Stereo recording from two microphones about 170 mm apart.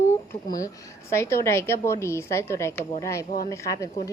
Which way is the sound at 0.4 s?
20° left (ahead or behind).